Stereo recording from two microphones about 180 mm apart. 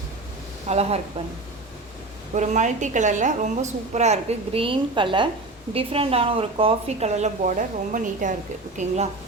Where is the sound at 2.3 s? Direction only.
40° right (ahead or behind).